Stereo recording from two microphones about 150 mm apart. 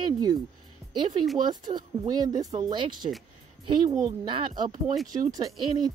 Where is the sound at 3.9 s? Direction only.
20° right (ahead or behind).